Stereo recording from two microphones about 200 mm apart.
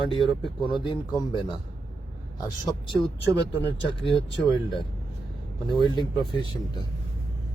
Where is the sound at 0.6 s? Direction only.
25° left (ahead or behind).